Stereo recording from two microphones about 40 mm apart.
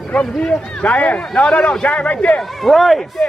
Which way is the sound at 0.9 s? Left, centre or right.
Left.